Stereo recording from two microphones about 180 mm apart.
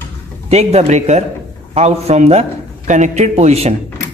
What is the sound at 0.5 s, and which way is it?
A man's voice, 35° right (ahead or behind).